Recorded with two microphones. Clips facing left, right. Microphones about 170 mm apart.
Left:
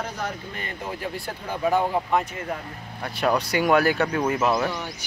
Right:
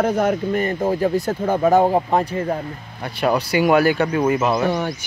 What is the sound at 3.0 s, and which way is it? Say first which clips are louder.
Speech: right 3 dB; 5° right (ahead or behind).